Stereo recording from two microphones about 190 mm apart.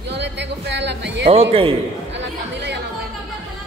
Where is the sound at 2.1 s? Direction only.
65° right (ahead or behind).